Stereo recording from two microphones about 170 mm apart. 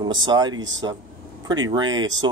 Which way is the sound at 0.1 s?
25° right (ahead or behind).